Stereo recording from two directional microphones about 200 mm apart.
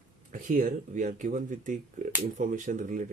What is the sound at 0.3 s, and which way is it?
Speech, 40° right (ahead or behind).